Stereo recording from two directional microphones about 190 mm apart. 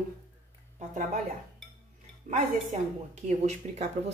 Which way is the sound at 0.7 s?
40° right (ahead or behind).